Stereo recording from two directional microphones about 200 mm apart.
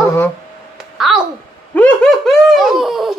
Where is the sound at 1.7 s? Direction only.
5° left (ahead or behind).